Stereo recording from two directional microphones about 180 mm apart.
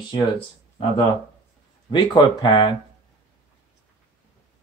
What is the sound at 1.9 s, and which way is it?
Speech, 25° left (ahead or behind).